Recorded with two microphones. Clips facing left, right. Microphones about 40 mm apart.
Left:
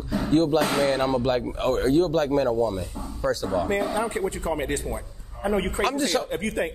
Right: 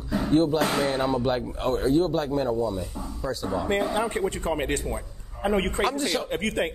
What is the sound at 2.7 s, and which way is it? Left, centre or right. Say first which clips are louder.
Speech: left 1 dB; centre.